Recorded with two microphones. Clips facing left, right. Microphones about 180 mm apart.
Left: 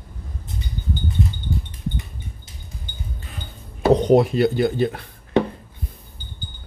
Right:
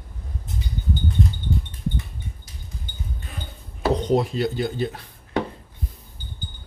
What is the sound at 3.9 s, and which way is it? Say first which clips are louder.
Speech: left 7 dB; 65° left (ahead or behind).